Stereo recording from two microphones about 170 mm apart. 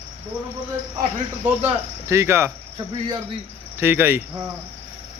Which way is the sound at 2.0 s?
15° right (ahead or behind).